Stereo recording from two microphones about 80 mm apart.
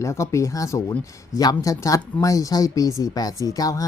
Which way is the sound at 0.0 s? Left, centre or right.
Left.